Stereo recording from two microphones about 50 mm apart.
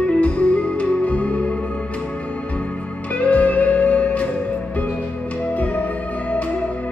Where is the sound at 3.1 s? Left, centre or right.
Left.